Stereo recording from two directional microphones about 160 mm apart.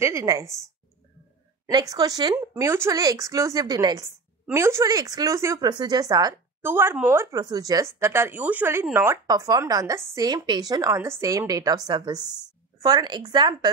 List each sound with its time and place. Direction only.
0.0 s speech: 20° right (ahead or behind)
1.7 s speech: 25° right (ahead or behind)